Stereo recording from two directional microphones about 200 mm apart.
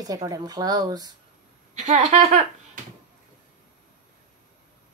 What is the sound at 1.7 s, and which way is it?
Speech, 35° right (ahead or behind).